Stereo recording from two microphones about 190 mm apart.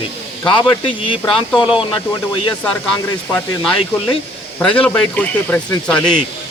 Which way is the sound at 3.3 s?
10° left (ahead or behind).